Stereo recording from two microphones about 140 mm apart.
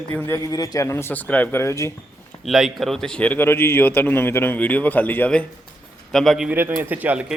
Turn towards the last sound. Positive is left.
turn(degrees=-10)  # may be behind; listen again after turning